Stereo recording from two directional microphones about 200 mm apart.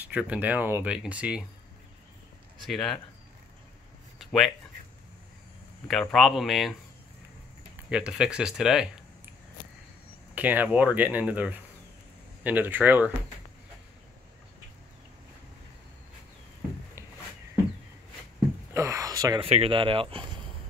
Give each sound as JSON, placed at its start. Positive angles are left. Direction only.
{"t": 0.0, "sound": "speech", "side_deg": -5}
{"t": 2.6, "sound": "speech", "side_deg": 0}
{"t": 4.2, "sound": "a sound", "side_deg": 0}
{"t": 5.9, "sound": "speech", "side_deg": 0}
{"t": 7.9, "sound": "speech", "side_deg": -5}
{"t": 10.3, "sound": "speech", "side_deg": -10}
{"t": 18.7, "sound": "a sound", "side_deg": -15}
{"t": 19.5, "sound": "speech", "side_deg": -25}